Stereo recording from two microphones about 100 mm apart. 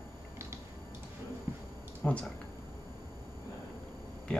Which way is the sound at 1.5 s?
25° right (ahead or behind).